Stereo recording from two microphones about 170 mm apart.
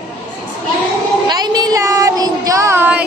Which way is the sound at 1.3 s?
25° right (ahead or behind).